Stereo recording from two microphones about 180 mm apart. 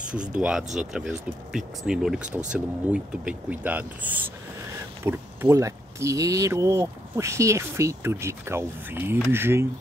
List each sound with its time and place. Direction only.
0.1 s speech: 5° right (ahead or behind)